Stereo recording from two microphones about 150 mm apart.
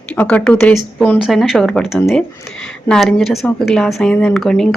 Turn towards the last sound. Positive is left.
turn(degrees=0)  # may be behind; listen again after turning